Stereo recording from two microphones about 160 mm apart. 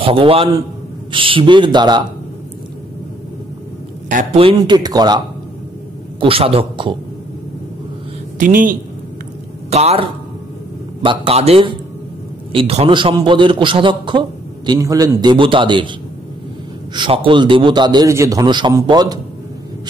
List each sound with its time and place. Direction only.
0.0 s a man's voice: 35° right (ahead or behind)
4.1 s speech: 55° right (ahead or behind)
4.6 s a man's voice: 25° right (ahead or behind)
8.4 s speech: 55° right (ahead or behind)
9.7 s a man's voice: 40° right (ahead or behind)
16.9 s a man's voice: 30° right (ahead or behind)